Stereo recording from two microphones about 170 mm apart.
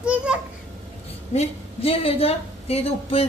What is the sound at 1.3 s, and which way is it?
A woman's voice, 35° left (ahead or behind).